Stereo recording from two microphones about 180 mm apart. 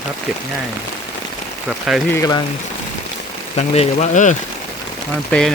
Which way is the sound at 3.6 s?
40° left (ahead or behind).